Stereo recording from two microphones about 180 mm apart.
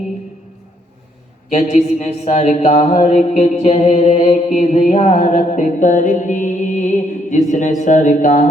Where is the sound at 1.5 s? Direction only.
40° left (ahead or behind).